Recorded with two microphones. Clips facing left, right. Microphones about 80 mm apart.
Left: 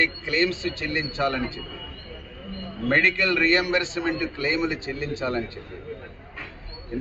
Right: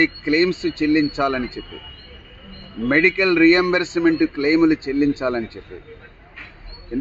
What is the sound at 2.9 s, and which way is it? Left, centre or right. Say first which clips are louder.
A man's voice: right 6 dB; right.